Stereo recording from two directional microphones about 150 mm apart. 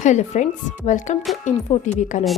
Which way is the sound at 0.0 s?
50° left (ahead or behind).